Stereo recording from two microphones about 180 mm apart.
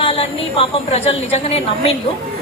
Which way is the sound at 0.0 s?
30° left (ahead or behind).